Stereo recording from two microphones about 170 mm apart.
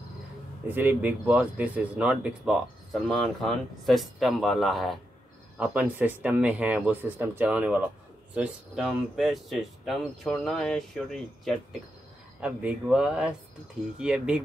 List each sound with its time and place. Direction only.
0.7 s speech: 10° right (ahead or behind)
5.6 s speech: 10° right (ahead or behind)